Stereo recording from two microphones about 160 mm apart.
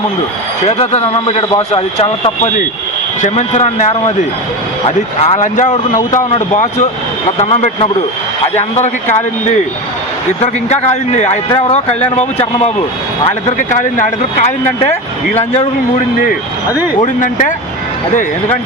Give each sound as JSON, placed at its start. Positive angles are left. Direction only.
{"t": 0.8, "sound": "speech", "side_deg": 40}
{"t": 4.9, "sound": "speech", "side_deg": 40}
{"t": 10.4, "sound": "speech", "side_deg": 45}
{"t": 17.0, "sound": "speech", "side_deg": 55}